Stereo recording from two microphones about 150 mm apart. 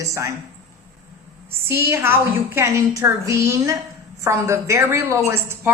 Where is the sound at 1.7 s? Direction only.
15° right (ahead or behind).